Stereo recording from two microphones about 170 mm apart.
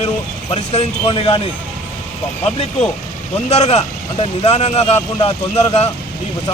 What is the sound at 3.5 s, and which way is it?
Speech, 40° left (ahead or behind).